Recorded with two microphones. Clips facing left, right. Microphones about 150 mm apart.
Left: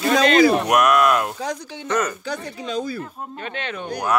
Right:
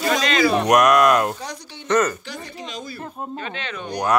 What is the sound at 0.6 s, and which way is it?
Speech, 5° left (ahead or behind).